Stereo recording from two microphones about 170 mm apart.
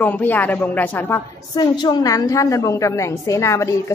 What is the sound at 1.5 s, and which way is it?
A woman's voice, 25° left (ahead or behind).